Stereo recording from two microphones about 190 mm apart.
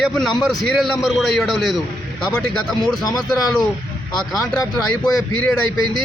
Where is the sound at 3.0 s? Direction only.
20° left (ahead or behind).